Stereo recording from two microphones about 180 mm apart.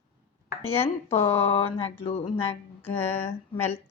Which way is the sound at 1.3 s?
30° left (ahead or behind).